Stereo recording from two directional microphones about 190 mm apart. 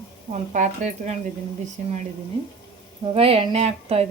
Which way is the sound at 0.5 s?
40° right (ahead or behind).